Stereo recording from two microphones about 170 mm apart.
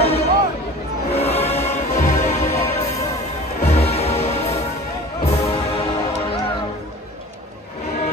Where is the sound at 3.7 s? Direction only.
35° left (ahead or behind).